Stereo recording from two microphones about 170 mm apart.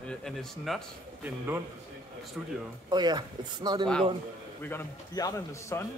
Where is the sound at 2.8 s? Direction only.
25° right (ahead or behind).